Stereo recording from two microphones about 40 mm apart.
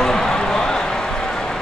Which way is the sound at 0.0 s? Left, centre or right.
Centre.